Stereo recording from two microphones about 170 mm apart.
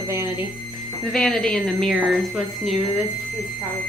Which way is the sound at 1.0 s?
5° left (ahead or behind).